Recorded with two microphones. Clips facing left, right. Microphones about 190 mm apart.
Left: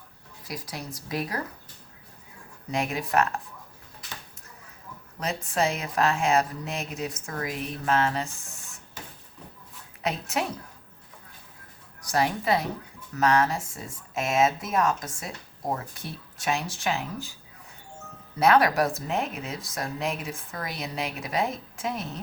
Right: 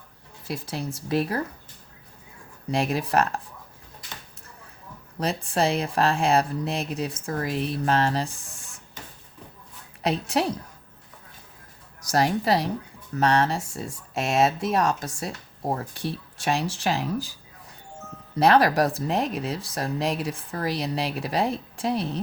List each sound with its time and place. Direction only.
0.4 s speech: 30° right (ahead or behind)
2.7 s speech: 35° right (ahead or behind)
5.2 s speech: 35° right (ahead or behind)
10.0 s speech: 35° right (ahead or behind)
12.0 s speech: 40° right (ahead or behind)
18.4 s speech: 35° right (ahead or behind)